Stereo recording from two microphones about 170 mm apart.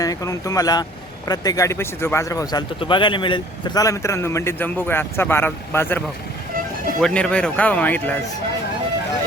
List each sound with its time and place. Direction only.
0.0 s a man's voice: 20° left (ahead or behind)
7.0 s a man's voice: 5° left (ahead or behind)